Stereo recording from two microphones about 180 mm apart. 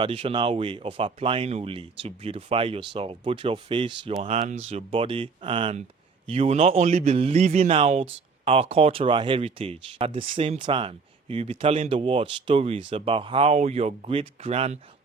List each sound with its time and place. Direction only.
0.0 s speech: 30° right (ahead or behind)